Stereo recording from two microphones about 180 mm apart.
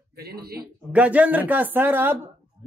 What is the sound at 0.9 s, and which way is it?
Speech, 10° right (ahead or behind).